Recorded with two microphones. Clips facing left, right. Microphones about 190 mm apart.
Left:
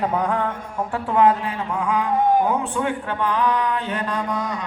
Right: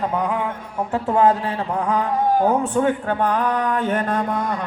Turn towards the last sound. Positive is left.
turn(degrees=-55)  # may be behind; listen again after turning